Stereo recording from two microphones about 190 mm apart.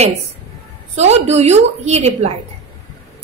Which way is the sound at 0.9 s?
35° right (ahead or behind).